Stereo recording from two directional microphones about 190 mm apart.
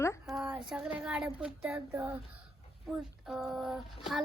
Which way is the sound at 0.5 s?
5° right (ahead or behind).